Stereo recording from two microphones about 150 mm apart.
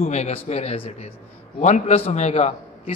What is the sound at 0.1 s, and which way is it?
A man's voice, 45° left (ahead or behind).